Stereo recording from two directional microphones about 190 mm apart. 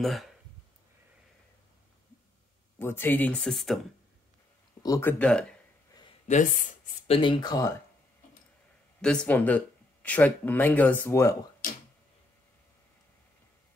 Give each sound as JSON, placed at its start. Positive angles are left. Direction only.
{"t": 0.0, "sound": "speech", "side_deg": 0}
{"t": 2.8, "sound": "speech", "side_deg": 10}
{"t": 4.8, "sound": "speech", "side_deg": 15}
{"t": 5.2, "sound": "speech", "side_deg": 5}
{"t": 6.2, "sound": "speech", "side_deg": 40}
{"t": 7.2, "sound": "speech", "side_deg": 25}
{"t": 9.0, "sound": "speech", "side_deg": 5}